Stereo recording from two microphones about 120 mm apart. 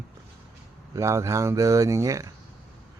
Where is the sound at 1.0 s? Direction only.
25° right (ahead or behind).